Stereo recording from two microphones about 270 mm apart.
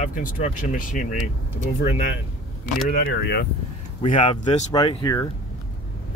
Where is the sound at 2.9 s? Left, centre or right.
Left.